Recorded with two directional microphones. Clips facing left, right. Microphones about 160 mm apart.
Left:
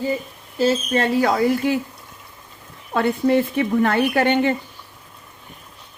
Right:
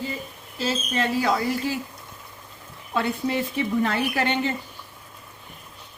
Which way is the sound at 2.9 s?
55° left (ahead or behind).